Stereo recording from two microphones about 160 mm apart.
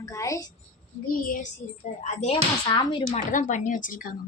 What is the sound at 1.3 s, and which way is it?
Speech, 55° left (ahead or behind).